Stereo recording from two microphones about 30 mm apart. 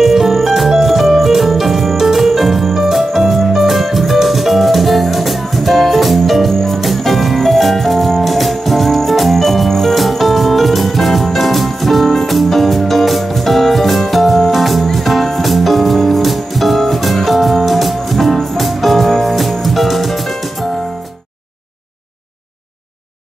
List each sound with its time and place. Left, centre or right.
0.0 s music: centre
2.0 s music: centre
2.2 s music: centre